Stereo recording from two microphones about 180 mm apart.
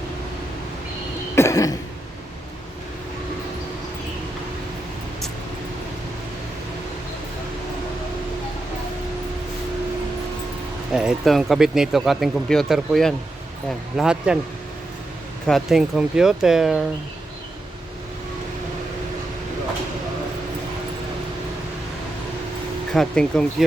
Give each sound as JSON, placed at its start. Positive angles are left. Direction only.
{"t": 1.4, "sound": "throat clearing", "side_deg": 15}
{"t": 10.9, "sound": "speech", "side_deg": 0}
{"t": 15.4, "sound": "speech", "side_deg": 0}
{"t": 22.9, "sound": "speech", "side_deg": 5}